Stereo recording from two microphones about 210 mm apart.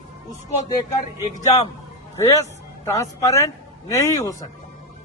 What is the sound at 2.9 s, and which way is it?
Speech, 15° left (ahead or behind).